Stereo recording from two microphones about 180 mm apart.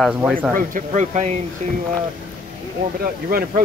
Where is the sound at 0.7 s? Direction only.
45° right (ahead or behind).